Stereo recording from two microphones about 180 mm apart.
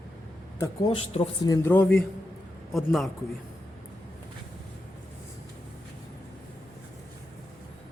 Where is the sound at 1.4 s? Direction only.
10° left (ahead or behind).